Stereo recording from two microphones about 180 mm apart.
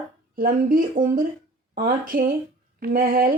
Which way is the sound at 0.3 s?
50° right (ahead or behind).